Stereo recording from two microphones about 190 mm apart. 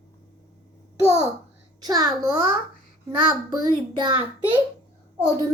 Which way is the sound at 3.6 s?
25° right (ahead or behind).